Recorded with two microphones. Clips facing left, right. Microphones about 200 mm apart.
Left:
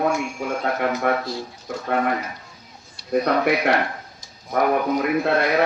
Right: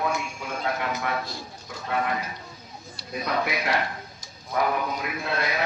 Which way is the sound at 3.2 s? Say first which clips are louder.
Left 6 dB; 60° left (ahead or behind).